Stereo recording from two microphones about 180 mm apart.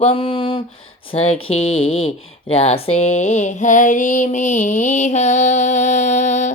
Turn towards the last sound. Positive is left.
turn(degrees=40)  # may be behind; listen again after turning